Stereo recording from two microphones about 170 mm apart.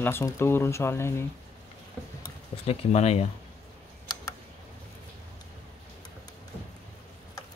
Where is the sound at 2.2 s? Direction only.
35° left (ahead or behind).